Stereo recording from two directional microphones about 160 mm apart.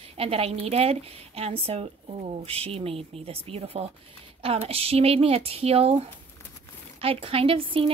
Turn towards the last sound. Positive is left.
turn(degrees=-35)  # may be behind; listen again after turning